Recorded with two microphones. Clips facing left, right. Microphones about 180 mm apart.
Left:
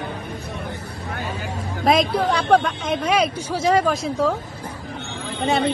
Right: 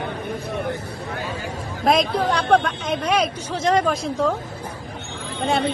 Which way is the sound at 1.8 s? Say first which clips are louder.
Left 1 dB; centre (ahead or behind).